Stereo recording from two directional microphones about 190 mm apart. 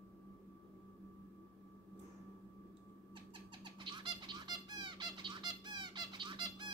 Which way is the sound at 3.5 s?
25° right (ahead or behind).